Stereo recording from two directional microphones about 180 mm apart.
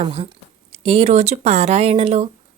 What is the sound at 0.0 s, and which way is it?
Speech, 35° right (ahead or behind).